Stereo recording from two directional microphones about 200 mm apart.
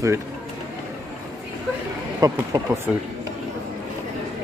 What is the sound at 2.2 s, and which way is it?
Speech, 15° right (ahead or behind).